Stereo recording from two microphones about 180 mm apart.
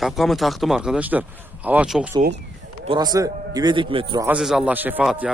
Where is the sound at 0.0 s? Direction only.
Centre (ahead or behind).